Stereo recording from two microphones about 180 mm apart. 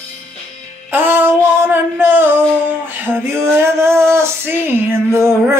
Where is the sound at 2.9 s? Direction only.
10° right (ahead or behind).